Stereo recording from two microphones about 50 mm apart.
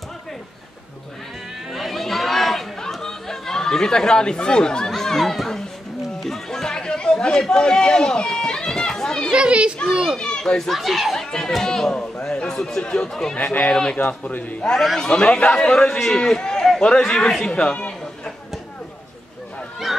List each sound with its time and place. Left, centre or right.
1.7 s chatter: centre
6.2 s music: centre
7.4 s speech: centre
9.3 s a child's voice: right
10.1 s children playing: centre
10.7 s speech: centre
11.2 s a man's voice: centre
13.4 s speech: left
15.0 s a man's voice: centre
17.7 s a sound: left